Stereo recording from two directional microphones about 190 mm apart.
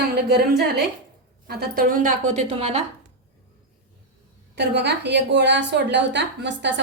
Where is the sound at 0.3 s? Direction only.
55° right (ahead or behind); by 2.8 s 35° right (ahead or behind).